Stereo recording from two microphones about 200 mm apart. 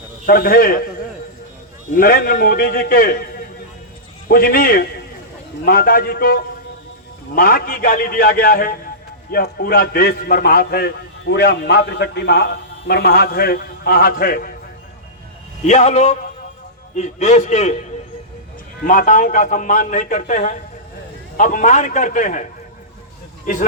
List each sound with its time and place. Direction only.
0.3 s a man's voice: 50° left (ahead or behind)
2.0 s a man's voice: 50° left (ahead or behind)
15.6 s a man's voice: 35° left (ahead or behind)
18.9 s a man's voice: 40° left (ahead or behind)